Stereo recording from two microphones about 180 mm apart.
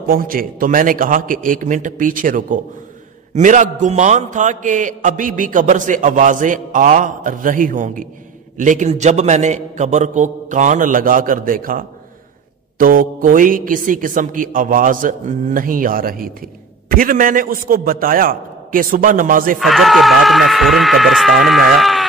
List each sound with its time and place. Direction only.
0.0 s a man's voice: 50° right (ahead or behind)
19.6 s speech: centre (ahead or behind)